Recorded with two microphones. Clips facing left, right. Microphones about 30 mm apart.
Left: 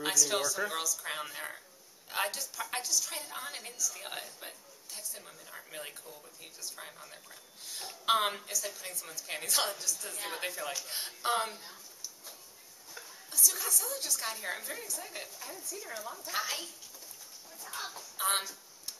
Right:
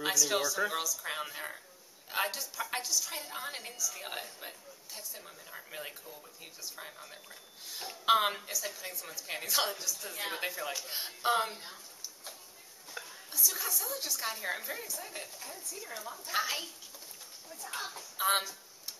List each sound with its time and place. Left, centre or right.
0.0 s a woman's voice: centre
11.5 s speech: right
12.9 s whispering: right
13.3 s a woman's voice: centre
17.7 s speech: centre